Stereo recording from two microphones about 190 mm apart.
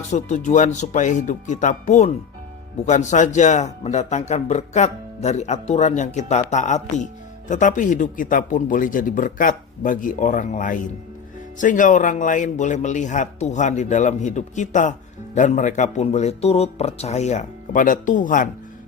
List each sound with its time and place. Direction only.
0.1 s a man's voice: 40° left (ahead or behind)